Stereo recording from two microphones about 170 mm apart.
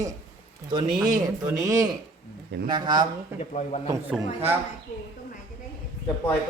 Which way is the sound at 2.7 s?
25° right (ahead or behind).